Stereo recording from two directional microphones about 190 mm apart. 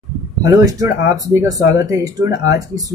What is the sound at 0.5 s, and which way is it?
Speech, 15° right (ahead or behind).